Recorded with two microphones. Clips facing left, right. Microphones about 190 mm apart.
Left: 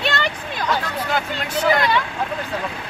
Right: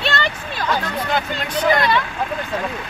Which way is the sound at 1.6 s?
10° left (ahead or behind).